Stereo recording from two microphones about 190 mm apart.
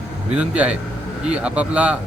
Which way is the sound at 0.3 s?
5° right (ahead or behind).